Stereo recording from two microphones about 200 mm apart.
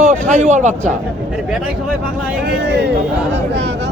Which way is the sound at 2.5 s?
60° right (ahead or behind).